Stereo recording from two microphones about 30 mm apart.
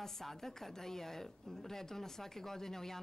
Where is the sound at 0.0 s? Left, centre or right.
Centre.